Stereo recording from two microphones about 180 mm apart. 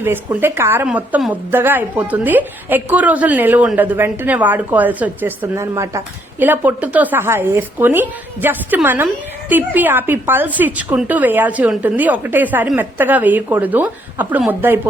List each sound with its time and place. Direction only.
0.0 s a woman's voice: 10° right (ahead or behind)